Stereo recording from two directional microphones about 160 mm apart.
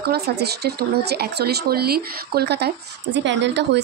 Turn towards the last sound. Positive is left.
turn(degrees=-90)